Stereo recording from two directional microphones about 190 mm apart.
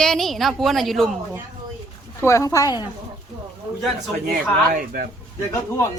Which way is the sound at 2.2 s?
15° left (ahead or behind).